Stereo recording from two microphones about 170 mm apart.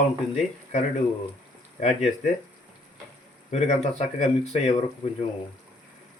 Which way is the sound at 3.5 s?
40° left (ahead or behind).